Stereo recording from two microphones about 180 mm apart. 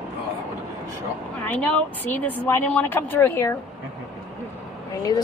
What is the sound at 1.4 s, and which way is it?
Speech, 10° left (ahead or behind).